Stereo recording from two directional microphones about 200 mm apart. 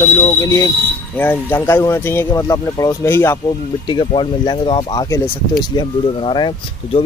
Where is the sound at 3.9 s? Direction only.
25° left (ahead or behind).